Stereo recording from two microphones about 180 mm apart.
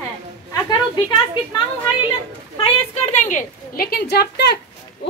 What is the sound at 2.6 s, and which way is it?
A woman's voice, 40° left (ahead or behind).